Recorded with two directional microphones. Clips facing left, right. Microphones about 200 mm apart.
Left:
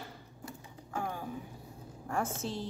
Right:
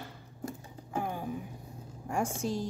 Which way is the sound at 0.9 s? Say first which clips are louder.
Right 3 dB; 15° right (ahead or behind).